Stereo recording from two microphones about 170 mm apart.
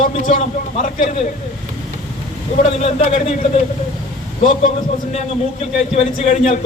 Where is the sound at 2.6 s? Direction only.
40° left (ahead or behind).